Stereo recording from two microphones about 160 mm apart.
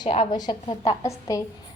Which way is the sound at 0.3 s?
25° left (ahead or behind).